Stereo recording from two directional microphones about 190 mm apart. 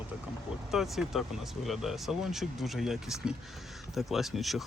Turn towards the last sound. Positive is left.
turn(degrees=0)  # may be behind; listen again after turning